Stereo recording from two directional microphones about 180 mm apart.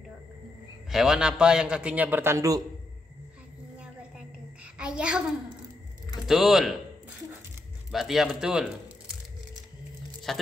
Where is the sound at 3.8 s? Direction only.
5° right (ahead or behind).